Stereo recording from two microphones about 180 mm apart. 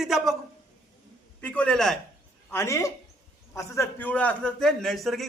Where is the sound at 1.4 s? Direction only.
5° left (ahead or behind).